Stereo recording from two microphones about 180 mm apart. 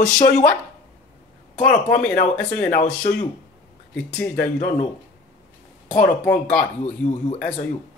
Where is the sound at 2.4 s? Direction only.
10° left (ahead or behind).